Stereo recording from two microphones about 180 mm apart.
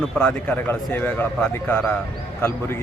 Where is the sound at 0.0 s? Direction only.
5° left (ahead or behind).